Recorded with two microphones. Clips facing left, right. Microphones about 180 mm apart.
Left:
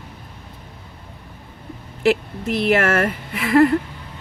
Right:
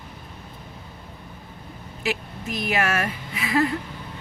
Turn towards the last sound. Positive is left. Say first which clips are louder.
# left 8 dB
turn(degrees=60)  # may be behind; listen again after turning